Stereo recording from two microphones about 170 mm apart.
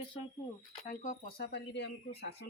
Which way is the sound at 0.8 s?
50° left (ahead or behind).